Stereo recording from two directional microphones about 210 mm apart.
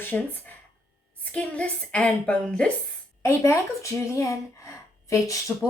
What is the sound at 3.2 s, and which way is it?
Speech, 15° left (ahead or behind).